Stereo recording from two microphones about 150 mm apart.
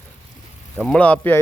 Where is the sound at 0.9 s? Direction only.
10° left (ahead or behind).